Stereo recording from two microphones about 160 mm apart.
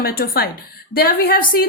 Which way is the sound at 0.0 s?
70° left (ahead or behind).